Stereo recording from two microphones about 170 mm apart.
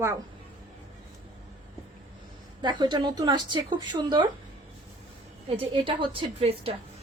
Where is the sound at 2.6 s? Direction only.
25° right (ahead or behind).